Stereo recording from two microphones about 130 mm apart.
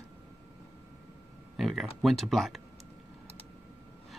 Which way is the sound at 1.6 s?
Centre (ahead or behind).